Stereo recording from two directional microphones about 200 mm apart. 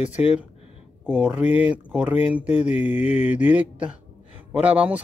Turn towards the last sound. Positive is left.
turn(degrees=-5)  # may be behind; listen again after turning